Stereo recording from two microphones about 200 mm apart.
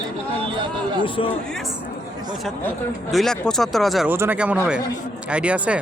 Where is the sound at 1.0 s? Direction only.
25° left (ahead or behind).